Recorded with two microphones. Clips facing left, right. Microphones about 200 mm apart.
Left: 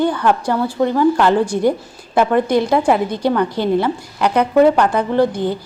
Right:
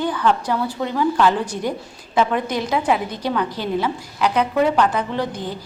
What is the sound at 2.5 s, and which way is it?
A woman's voice, 60° left (ahead or behind).